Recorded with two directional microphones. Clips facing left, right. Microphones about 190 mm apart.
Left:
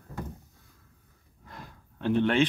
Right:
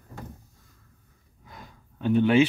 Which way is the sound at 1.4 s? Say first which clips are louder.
Left 1 dB; centre (ahead or behind).